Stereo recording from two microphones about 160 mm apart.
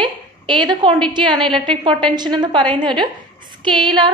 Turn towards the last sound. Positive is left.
turn(degrees=-30)  # may be behind; listen again after turning